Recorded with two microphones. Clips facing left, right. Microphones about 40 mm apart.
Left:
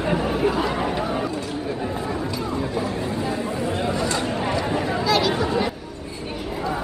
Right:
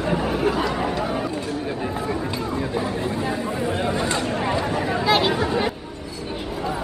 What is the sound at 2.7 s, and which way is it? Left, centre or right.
Chatter, centre.